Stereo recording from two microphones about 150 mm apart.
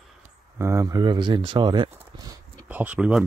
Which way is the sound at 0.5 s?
20° right (ahead or behind).